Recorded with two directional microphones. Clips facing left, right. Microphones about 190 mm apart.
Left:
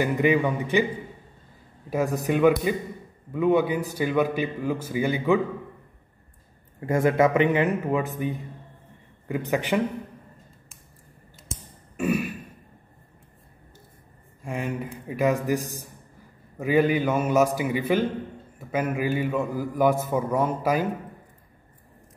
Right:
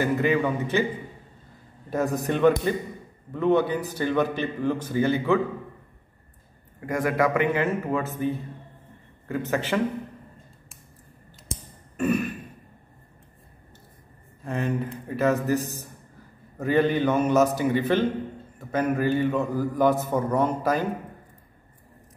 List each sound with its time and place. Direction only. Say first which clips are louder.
0.0 s a man's voice: left 1 dB; 15° left (ahead or behind)
1.9 s a man's voice: left 1 dB; 10° left (ahead or behind)
6.9 s a man's voice: left 3 dB; 25° left (ahead or behind)
12.0 s throat clearing: right 1 dB; 10° left (ahead or behind)
14.4 s a man's voice: right 3 dB; 10° left (ahead or behind)